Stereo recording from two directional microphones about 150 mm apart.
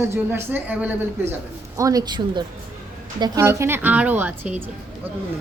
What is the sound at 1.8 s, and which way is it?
Speech, 25° right (ahead or behind).